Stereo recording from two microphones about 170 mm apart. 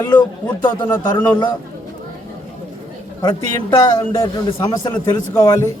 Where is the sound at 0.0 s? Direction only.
25° left (ahead or behind).